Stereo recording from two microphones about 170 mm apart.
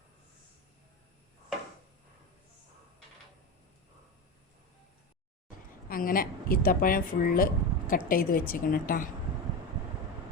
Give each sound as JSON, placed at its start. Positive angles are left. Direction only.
{"t": 5.9, "sound": "a woman's voice", "side_deg": 55}